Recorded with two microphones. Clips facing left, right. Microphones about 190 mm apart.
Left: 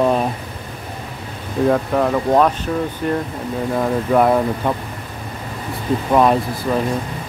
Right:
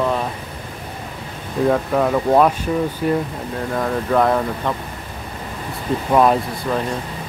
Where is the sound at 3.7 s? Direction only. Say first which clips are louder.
Left 2 dB; 10° left (ahead or behind).